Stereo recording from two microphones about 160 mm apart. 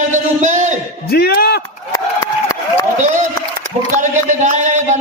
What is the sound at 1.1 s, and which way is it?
Speech, 75° left (ahead or behind).